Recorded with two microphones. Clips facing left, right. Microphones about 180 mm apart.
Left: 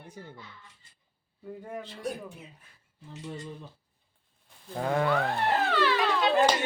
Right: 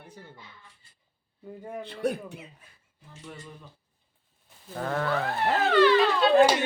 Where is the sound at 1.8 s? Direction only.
60° right (ahead or behind).